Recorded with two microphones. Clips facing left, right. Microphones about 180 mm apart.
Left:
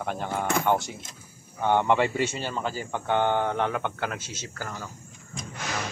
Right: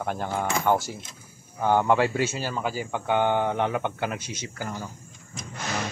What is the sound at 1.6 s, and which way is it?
Speech, 5° right (ahead or behind).